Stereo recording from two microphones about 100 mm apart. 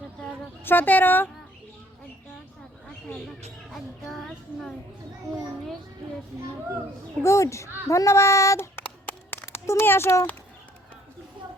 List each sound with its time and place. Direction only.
0.2 s a sound: 20° left (ahead or behind)
3.7 s child singing: centre (ahead or behind)
7.2 s a child's voice: 30° left (ahead or behind)